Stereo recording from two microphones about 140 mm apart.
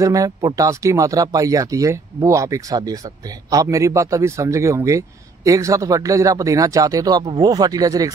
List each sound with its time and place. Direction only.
0.0 s speech: 25° right (ahead or behind)